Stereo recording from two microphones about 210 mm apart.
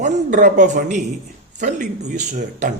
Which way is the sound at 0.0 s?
35° right (ahead or behind).